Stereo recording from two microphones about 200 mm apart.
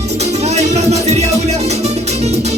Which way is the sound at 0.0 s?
35° right (ahead or behind).